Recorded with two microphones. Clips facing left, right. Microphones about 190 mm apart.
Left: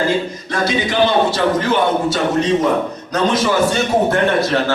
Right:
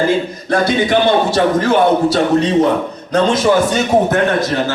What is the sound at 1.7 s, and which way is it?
A man's voice, 35° right (ahead or behind).